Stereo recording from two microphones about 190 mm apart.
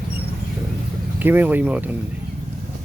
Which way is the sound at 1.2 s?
10° right (ahead or behind).